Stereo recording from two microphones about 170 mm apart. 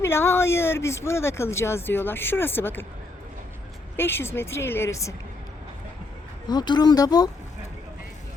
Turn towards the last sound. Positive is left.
turn(degrees=20)  # may be behind; listen again after turning